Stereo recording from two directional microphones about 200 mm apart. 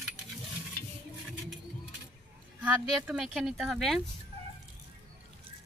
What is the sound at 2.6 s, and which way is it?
Speech, 5° right (ahead or behind).